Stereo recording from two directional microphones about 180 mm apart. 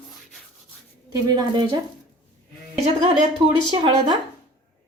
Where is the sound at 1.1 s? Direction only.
25° right (ahead or behind).